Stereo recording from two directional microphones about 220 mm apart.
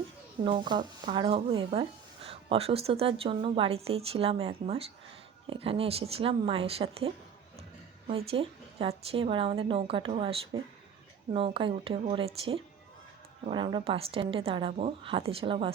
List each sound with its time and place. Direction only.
0.4 s a woman's voice: 20° right (ahead or behind)
8.3 s a woman's voice: 25° right (ahead or behind)